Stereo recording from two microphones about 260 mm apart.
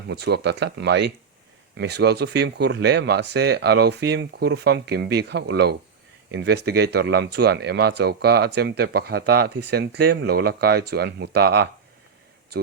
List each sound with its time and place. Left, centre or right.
0.1 s speech: right